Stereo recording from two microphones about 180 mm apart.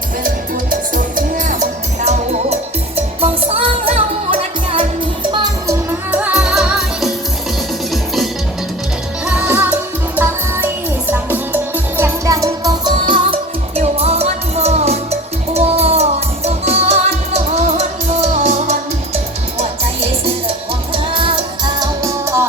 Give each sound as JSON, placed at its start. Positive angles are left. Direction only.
{"t": 0.9, "sound": "music", "side_deg": -45}
{"t": 6.1, "sound": "music", "side_deg": -5}
{"t": 9.2, "sound": "music", "side_deg": -10}
{"t": 11.1, "sound": "music", "side_deg": -10}
{"t": 13.7, "sound": "music", "side_deg": -35}